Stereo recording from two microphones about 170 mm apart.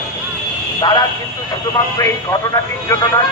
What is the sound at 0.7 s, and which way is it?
A man's voice, 25° left (ahead or behind).